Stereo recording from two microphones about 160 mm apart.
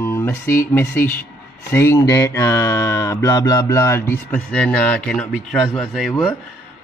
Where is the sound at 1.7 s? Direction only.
15° left (ahead or behind); by 6.1 s centre (ahead or behind).